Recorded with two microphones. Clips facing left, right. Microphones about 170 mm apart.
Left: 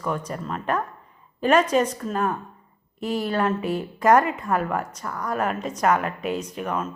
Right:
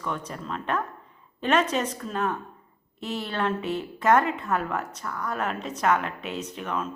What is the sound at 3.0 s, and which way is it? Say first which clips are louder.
Speech: left 6 dB; 50° left (ahead or behind).